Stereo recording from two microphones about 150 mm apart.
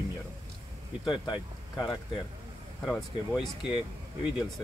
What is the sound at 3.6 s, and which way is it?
Speech, 35° left (ahead or behind).